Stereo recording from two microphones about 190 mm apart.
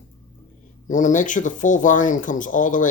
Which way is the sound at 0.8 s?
40° left (ahead or behind).